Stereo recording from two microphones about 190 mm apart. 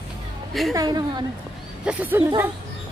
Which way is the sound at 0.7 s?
20° right (ahead or behind).